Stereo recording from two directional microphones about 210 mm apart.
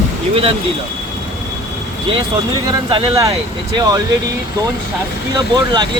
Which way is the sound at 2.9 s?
20° right (ahead or behind).